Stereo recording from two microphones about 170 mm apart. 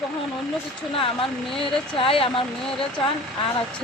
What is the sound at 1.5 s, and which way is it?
Speech, 30° left (ahead or behind).